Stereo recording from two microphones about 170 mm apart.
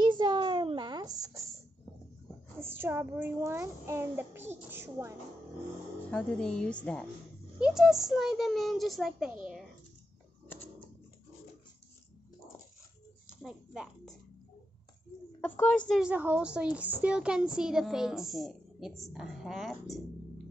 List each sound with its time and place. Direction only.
0.0 s a sound: 25° right (ahead or behind)
2.6 s a child's voice: 15° right (ahead or behind)
6.0 s a woman's voice: 5° left (ahead or behind)
7.5 s a woman's voice: 5° right (ahead or behind)
13.4 s a sound: centre (ahead or behind)
15.4 s a woman's voice: 10° left (ahead or behind)
15.9 s a child's voice: 5° right (ahead or behind)